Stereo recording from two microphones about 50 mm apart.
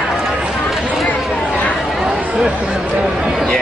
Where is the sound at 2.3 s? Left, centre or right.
Centre.